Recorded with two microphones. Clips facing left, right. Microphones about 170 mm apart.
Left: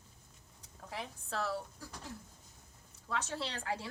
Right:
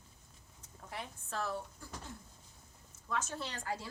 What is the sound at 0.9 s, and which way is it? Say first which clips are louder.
Speech: left 2 dB; 85° left.